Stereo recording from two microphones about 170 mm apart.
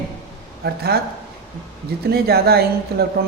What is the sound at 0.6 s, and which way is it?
Speech, 65° right (ahead or behind).